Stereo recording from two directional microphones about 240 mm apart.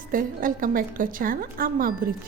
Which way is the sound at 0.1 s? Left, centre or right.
Right.